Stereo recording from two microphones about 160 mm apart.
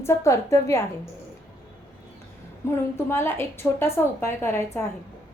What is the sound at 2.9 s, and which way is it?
A woman's voice, 15° left (ahead or behind).